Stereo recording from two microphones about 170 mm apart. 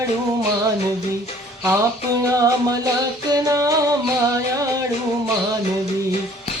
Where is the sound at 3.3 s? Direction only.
20° right (ahead or behind).